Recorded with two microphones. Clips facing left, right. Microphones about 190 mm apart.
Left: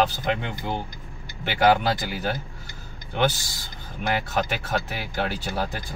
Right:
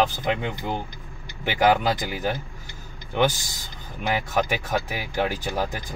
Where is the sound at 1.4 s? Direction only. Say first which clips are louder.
Even; 15° right (ahead or behind).